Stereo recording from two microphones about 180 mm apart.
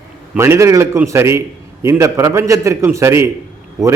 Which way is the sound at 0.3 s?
15° right (ahead or behind).